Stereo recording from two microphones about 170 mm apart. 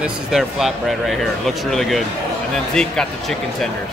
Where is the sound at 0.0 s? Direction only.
Centre (ahead or behind).